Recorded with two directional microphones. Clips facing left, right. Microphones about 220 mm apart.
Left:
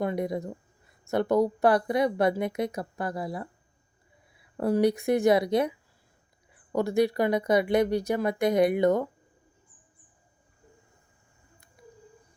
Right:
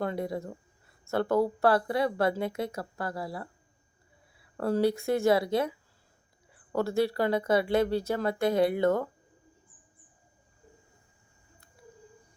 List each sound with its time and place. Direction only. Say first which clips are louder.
0.0 s speech: left 3 dB; 15° left (ahead or behind)
4.5 s speech: left 3 dB; 15° left (ahead or behind)
6.7 s speech: left 3 dB; 15° left (ahead or behind)